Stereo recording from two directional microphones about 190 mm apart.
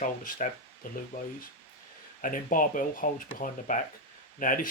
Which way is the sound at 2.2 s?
45° left (ahead or behind).